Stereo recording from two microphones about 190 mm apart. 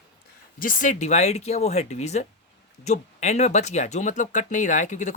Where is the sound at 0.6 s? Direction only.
45° left (ahead or behind).